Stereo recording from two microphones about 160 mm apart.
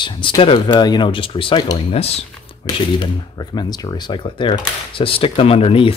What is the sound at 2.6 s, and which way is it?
Speech, 30° left (ahead or behind).